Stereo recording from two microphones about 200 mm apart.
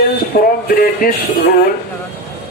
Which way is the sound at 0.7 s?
45° left (ahead or behind).